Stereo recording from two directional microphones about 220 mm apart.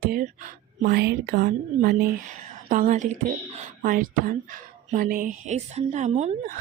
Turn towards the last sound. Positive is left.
turn(degrees=-30)  # may be behind; listen again after turning